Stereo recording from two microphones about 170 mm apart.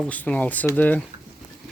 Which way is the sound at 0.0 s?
5° left (ahead or behind).